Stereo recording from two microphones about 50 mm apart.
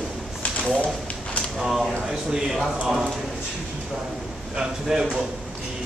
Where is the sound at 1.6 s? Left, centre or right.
Centre.